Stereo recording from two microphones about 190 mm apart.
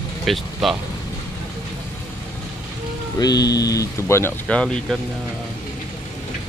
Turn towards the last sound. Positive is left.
turn(degrees=5)  # may be behind; listen again after turning